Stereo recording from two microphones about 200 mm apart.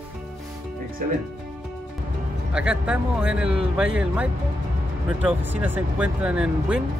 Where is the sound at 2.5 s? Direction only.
5° right (ahead or behind).